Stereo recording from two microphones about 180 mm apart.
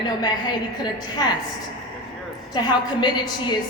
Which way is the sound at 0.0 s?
25° left (ahead or behind).